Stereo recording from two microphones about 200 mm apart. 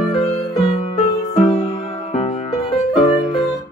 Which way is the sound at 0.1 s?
30° left (ahead or behind).